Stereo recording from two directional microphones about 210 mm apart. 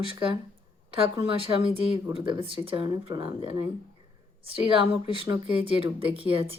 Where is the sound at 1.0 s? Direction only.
25° right (ahead or behind).